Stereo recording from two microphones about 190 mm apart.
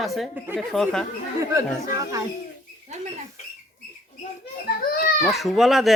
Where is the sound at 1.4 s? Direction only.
15° right (ahead or behind).